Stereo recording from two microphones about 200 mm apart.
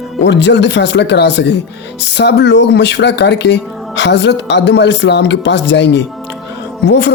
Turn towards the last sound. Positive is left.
turn(degrees=55)  # may be behind; listen again after turning